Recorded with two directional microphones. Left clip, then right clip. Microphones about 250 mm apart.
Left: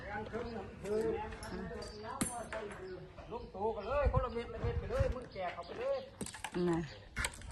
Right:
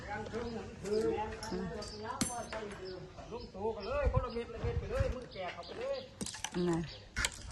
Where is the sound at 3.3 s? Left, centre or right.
Centre.